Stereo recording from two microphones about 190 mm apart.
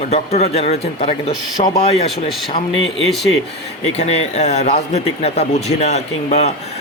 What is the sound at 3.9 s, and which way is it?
A man's voice, 35° left (ahead or behind).